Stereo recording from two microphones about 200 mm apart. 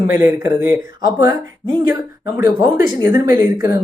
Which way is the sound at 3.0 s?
15° right (ahead or behind).